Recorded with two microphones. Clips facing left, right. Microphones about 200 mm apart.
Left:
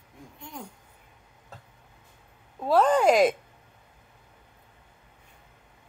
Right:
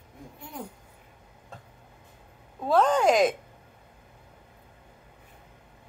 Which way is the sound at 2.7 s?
5° left (ahead or behind).